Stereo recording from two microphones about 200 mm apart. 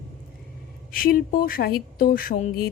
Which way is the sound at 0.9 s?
45° left (ahead or behind).